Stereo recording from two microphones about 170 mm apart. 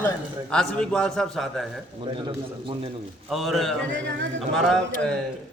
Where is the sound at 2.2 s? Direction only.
30° right (ahead or behind).